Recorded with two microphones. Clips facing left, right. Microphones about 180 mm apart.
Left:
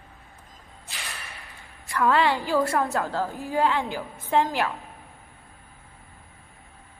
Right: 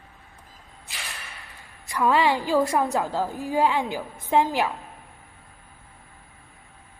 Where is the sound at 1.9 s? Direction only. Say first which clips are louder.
Right 1 dB; 15° right (ahead or behind).